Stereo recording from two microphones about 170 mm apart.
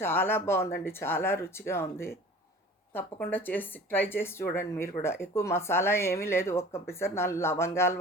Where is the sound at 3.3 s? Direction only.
10° left (ahead or behind).